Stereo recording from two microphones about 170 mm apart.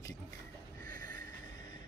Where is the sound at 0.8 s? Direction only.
55° right (ahead or behind).